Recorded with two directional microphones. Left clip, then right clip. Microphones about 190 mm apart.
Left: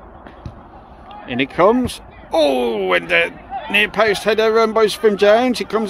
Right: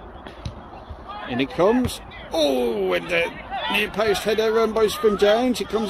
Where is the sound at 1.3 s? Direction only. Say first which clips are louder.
Left 5 dB; 20° left (ahead or behind).